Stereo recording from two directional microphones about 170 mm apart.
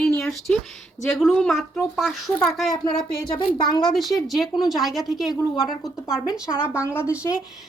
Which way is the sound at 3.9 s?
Centre (ahead or behind).